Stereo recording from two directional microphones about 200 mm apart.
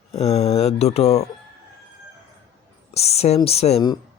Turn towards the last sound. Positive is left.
turn(degrees=30)  # may be behind; listen again after turning